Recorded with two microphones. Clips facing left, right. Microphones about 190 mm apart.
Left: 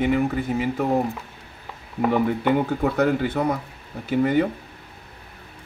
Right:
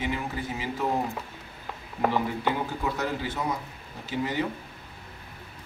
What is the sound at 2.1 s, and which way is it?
Speech, 55° left (ahead or behind).